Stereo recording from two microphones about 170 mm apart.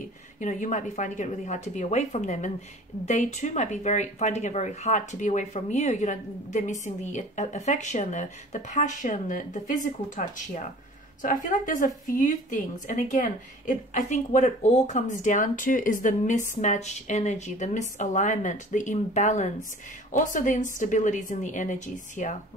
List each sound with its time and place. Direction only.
0.4 s speech: 50° left (ahead or behind)